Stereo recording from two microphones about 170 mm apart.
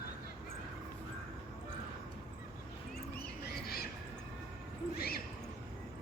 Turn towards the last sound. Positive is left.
turn(degrees=60)  # may be behind; listen again after turning